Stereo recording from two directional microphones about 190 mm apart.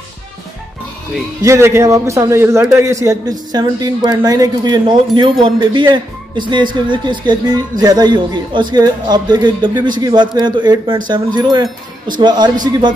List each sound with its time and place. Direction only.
1.4 s a man's voice: 15° right (ahead or behind)